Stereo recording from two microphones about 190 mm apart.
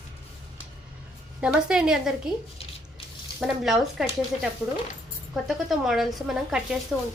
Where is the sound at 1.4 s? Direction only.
5° right (ahead or behind).